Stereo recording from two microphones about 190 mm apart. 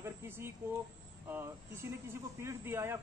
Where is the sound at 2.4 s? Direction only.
15° right (ahead or behind).